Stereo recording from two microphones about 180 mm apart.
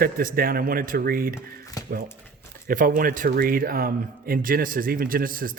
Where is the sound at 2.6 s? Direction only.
50° right (ahead or behind).